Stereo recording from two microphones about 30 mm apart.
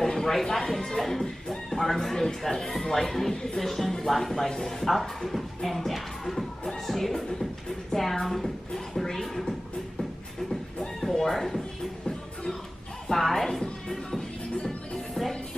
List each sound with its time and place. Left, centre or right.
0.0 s speech: centre
4.8 s speech: centre
7.9 s music: centre
11.2 s a sound: centre
13.1 s speech: centre
14.6 s music: left